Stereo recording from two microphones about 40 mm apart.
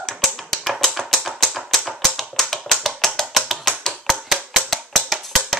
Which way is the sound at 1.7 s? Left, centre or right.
Centre.